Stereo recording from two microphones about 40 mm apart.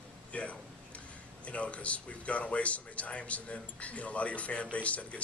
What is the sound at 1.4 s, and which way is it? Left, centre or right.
A man's voice, left.